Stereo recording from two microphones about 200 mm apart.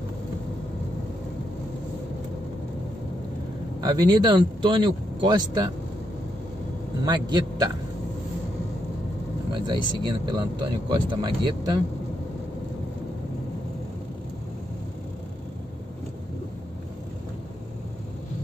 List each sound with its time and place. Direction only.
3.8 s speech: 20° right (ahead or behind)
7.1 s speech: 20° right (ahead or behind)
9.5 s speech: 20° right (ahead or behind)